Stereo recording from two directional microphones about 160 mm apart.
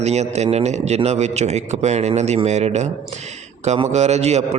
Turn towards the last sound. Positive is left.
turn(degrees=-45)  # may be behind; listen again after turning